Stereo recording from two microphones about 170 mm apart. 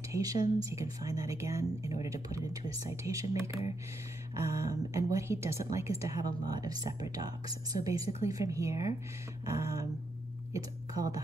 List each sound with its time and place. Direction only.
0.1 s speech: 20° right (ahead or behind)